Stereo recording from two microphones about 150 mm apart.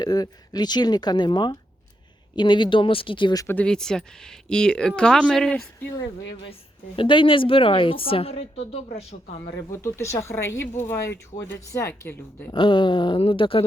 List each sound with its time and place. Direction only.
0.0 s a woman's voice: 25° left (ahead or behind)
3.4 s speech: 10° left (ahead or behind)
6.0 s a woman's voice: 35° left (ahead or behind)
9.7 s speech: 20° left (ahead or behind)
12.5 s a woman's voice: 35° left (ahead or behind)